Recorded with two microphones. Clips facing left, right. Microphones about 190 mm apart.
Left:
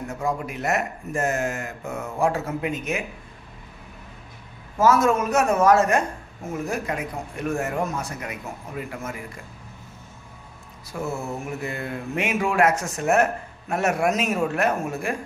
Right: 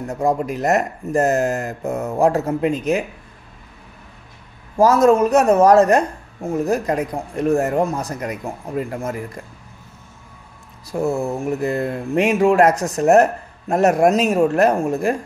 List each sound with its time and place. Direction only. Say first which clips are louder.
0.1 s speech: right 9 dB; 35° right (ahead or behind)
4.7 s speech: right 6 dB; 35° right (ahead or behind)
10.9 s speech: right 8 dB; 35° right (ahead or behind)